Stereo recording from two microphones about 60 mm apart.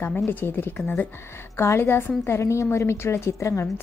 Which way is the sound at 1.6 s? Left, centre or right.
Left.